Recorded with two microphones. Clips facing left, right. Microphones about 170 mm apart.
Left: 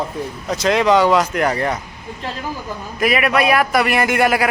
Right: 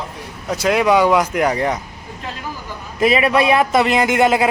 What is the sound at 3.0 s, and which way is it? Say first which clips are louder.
A man's voice: right 2 dB; 25° right (ahead or behind).